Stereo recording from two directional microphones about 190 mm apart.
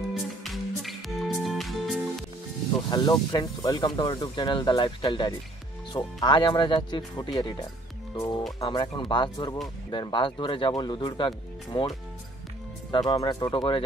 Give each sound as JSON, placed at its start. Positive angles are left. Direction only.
{"t": 0.4, "sound": "music", "side_deg": 0}
{"t": 2.9, "sound": "speech", "side_deg": 20}
{"t": 12.9, "sound": "speech", "side_deg": 20}